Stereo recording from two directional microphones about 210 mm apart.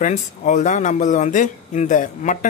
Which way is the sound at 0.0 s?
35° left (ahead or behind).